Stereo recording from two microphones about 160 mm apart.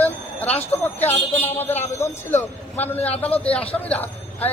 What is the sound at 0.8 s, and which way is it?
A man's voice, 10° left (ahead or behind).